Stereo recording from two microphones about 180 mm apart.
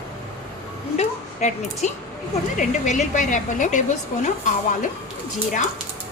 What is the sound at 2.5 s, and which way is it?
A woman's voice, 45° left (ahead or behind).